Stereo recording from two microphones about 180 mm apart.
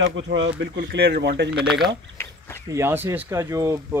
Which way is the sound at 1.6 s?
Centre (ahead or behind).